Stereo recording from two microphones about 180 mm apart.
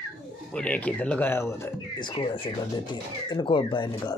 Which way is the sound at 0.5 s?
5° left (ahead or behind).